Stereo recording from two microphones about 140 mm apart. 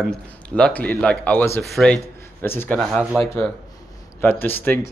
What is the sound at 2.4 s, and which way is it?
Speech, 15° left (ahead or behind).